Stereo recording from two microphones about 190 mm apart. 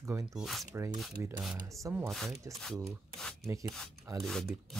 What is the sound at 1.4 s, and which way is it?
Speech, 5° right (ahead or behind).